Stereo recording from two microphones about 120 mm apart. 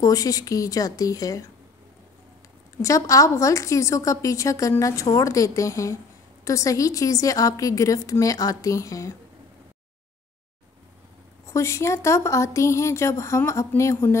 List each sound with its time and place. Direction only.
0.0 s a woman's voice: 30° left (ahead or behind)
2.8 s a woman's voice: 25° left (ahead or behind)
11.4 s a woman's voice: 25° left (ahead or behind)